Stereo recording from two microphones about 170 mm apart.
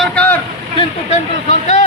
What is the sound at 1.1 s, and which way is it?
Speech, 45° left (ahead or behind).